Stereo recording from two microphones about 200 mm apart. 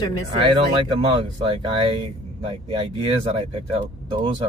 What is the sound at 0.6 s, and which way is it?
Speech, 25° right (ahead or behind).